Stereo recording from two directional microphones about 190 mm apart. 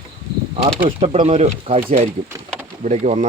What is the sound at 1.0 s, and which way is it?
Speech, 35° right (ahead or behind).